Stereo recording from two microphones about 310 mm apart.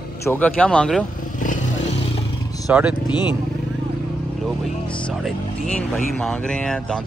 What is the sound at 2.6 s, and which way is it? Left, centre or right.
Speech, centre.